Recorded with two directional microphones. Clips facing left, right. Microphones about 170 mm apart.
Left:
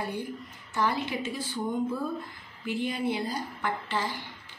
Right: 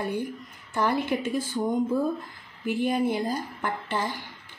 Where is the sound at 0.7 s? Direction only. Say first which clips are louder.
Right 4 dB; 50° right (ahead or behind).